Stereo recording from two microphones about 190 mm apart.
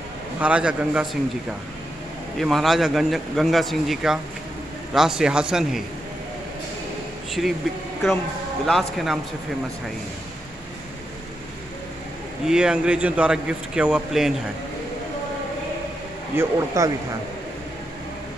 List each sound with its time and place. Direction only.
0.4 s a man's voice: 5° right (ahead or behind)
2.3 s speech: centre (ahead or behind)
7.4 s speech: centre (ahead or behind)
8.6 s speech: centre (ahead or behind)
12.4 s speech: 5° right (ahead or behind)
16.3 s a man's voice: 15° right (ahead or behind)